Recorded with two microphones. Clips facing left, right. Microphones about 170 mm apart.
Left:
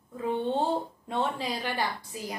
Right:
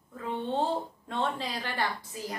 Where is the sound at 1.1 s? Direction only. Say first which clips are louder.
Left 2 dB; 10° left (ahead or behind).